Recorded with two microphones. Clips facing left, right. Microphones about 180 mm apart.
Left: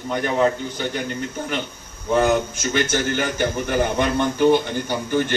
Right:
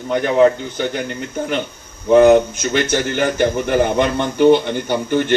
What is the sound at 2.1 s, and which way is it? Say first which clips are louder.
A man's voice: right 9 dB; 60° right (ahead or behind).